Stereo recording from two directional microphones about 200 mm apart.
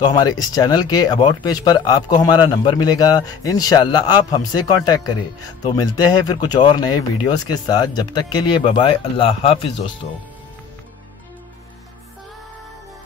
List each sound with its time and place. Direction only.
0.0 s speech: 20° left (ahead or behind)